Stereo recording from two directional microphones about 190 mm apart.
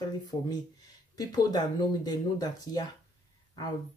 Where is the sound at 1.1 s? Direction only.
20° left (ahead or behind).